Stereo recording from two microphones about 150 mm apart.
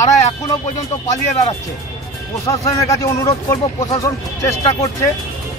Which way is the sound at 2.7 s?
20° left (ahead or behind).